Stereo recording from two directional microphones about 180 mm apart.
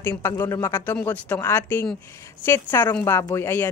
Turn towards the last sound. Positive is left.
turn(degrees=15)  # may be behind; listen again after turning